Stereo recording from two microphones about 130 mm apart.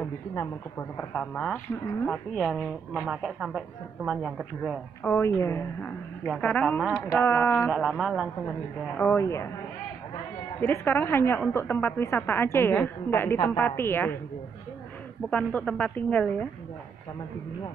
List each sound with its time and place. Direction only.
0.3 s speech: 20° left (ahead or behind)
1.1 s a woman's voice: 10° left (ahead or behind)
2.0 s a woman's voice: centre (ahead or behind)
5.0 s a woman's voice: 15° left (ahead or behind)
6.2 s a woman's voice: centre (ahead or behind)
6.5 s a woman's voice: 10° left (ahead or behind)
7.7 s a woman's voice: centre (ahead or behind)
8.9 s speech: 15° left (ahead or behind)
10.6 s a woman's voice: 20° left (ahead or behind)
15.2 s a woman's voice: 10° left (ahead or behind)